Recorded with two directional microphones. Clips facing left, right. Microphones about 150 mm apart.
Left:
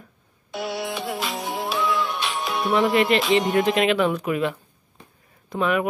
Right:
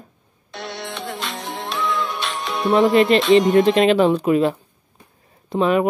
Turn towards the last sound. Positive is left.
turn(degrees=-30)  # may be behind; listen again after turning